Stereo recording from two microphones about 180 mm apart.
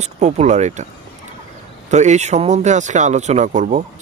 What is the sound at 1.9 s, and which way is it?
Speech, 40° right (ahead or behind).